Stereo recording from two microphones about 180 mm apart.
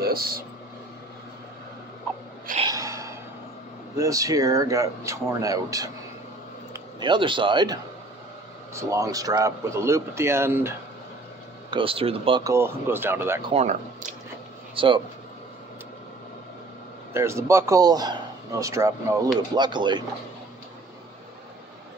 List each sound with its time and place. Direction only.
0.0 s speech: 55° right (ahead or behind)
2.6 s a sound: 20° right (ahead or behind)
3.9 s speech: 20° right (ahead or behind)
7.0 s a man's voice: 25° right (ahead or behind)
11.7 s a man's voice: 30° right (ahead or behind); by 13.4 s 10° right (ahead or behind)
13.5 s speech: 40° right (ahead or behind)
14.8 s speech: 30° right (ahead or behind)
17.1 s a man's voice: 15° right (ahead or behind)